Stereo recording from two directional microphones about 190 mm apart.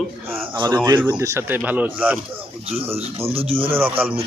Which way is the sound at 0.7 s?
15° right (ahead or behind).